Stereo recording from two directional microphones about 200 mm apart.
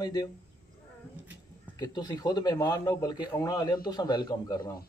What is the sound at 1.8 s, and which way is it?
A man's voice, 20° left (ahead or behind).